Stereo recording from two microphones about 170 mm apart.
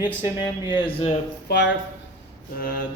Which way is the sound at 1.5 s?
90° left.